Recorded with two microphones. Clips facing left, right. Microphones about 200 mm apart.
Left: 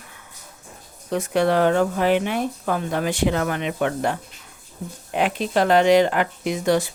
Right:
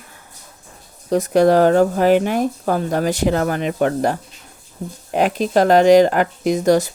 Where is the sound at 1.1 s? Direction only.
40° right (ahead or behind).